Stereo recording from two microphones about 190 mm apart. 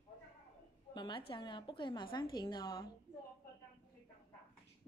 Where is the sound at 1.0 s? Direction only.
25° left (ahead or behind).